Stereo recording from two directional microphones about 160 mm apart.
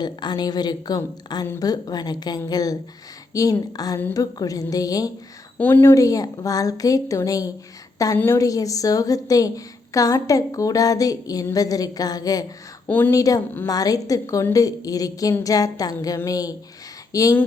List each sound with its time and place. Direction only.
0.0 s a woman's voice: 25° left (ahead or behind)
5.5 s a woman's voice: 10° left (ahead or behind)